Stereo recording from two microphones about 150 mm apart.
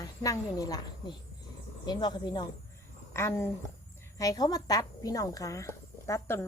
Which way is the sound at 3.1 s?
20° left (ahead or behind).